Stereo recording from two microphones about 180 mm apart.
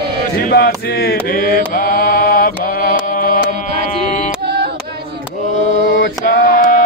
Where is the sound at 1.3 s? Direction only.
55° left (ahead or behind).